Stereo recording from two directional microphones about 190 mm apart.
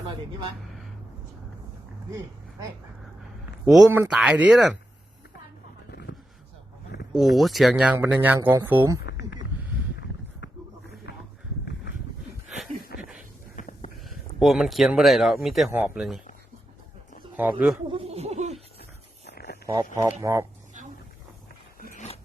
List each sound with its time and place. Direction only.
3.9 s speech: 10° right (ahead or behind)
5.9 s a sound: 60° left (ahead or behind)
7.1 s speech: centre (ahead or behind)
10.4 s a sound: 70° left (ahead or behind)
13.0 s dog: 5° right (ahead or behind)
13.6 s a sound: 40° left (ahead or behind)
14.1 s speech: centre (ahead or behind)
17.3 s speech: 5° right (ahead or behind)
17.8 s speech: 30° right (ahead or behind)
18.8 s a sound: 60° left (ahead or behind)
19.6 s speech: 20° right (ahead or behind)
21.9 s dog: 35° left (ahead or behind)